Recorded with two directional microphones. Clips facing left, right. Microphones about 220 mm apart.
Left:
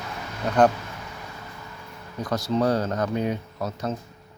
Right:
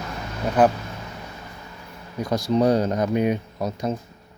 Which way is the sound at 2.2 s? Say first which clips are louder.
Right 3 dB; 10° right (ahead or behind).